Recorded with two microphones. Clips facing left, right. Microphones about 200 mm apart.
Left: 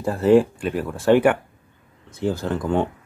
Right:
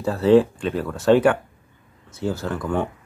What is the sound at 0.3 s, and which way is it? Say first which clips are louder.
Speech: even; 10° left (ahead or behind).